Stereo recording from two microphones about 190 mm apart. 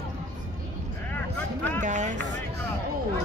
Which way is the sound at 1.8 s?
40° right (ahead or behind).